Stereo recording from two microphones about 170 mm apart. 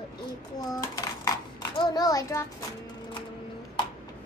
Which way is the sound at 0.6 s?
20° left (ahead or behind).